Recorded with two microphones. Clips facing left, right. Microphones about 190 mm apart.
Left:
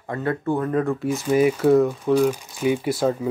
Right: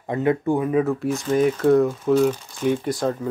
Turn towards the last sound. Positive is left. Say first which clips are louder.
# left 1 dB
turn(degrees=5)  # may be behind; listen again after turning